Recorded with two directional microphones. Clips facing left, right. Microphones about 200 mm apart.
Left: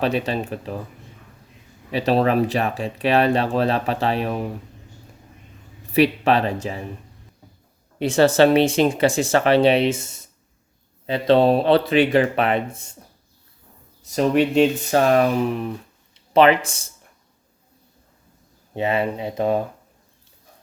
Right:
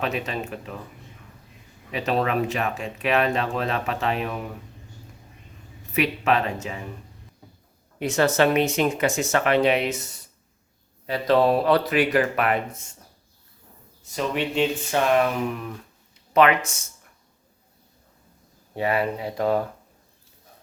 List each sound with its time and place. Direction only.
0.0 s speech: 35° left (ahead or behind)
1.9 s speech: 35° left (ahead or behind)
5.9 s speech: 35° left (ahead or behind)
7.9 s speech: 30° left (ahead or behind)
14.0 s speech: 40° left (ahead or behind)
18.7 s speech: 25° left (ahead or behind)